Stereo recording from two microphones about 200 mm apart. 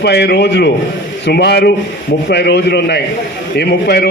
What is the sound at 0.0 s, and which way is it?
A man's voice, 55° left (ahead or behind).